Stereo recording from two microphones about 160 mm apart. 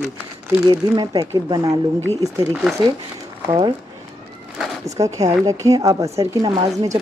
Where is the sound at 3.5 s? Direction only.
30° right (ahead or behind).